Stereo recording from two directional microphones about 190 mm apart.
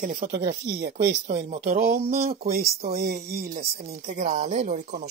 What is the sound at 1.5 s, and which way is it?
Speech, 35° right (ahead or behind).